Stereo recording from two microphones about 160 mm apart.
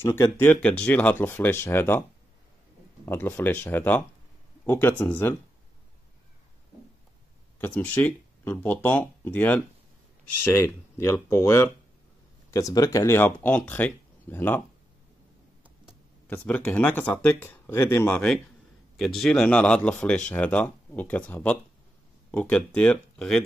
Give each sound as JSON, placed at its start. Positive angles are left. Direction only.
{"t": 0.0, "sound": "speech", "side_deg": 15}
{"t": 3.1, "sound": "speech", "side_deg": 15}
{"t": 7.5, "sound": "speech", "side_deg": 10}
{"t": 16.3, "sound": "speech", "side_deg": 10}